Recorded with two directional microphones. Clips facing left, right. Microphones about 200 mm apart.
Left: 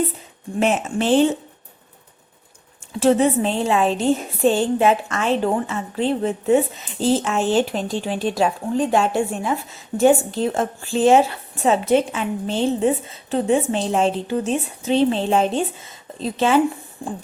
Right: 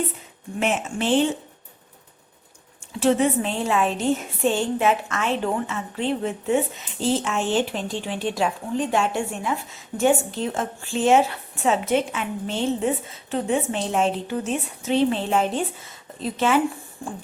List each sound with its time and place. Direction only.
0.6 s speech: 40° left (ahead or behind)
3.0 s speech: 35° left (ahead or behind)
17.0 s beatboxing: 20° left (ahead or behind)